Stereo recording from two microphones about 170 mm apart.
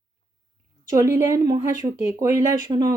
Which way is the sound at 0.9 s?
15° right (ahead or behind).